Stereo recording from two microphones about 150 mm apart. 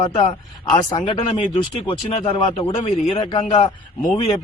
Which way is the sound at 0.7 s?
30° left (ahead or behind).